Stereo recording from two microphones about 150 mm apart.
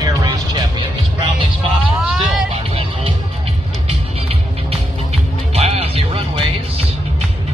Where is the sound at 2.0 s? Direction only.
Centre (ahead or behind).